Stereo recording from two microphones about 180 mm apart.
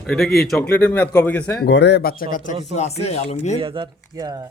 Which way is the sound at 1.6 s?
70° left (ahead or behind).